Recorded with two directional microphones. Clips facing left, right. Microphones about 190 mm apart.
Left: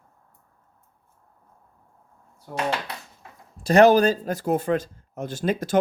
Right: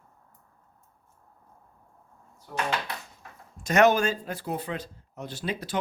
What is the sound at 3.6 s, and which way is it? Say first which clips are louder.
Speech: left 6 dB; 35° left (ahead or behind).